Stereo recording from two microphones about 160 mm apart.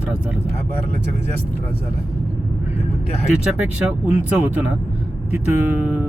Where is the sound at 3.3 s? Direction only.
5° right (ahead or behind).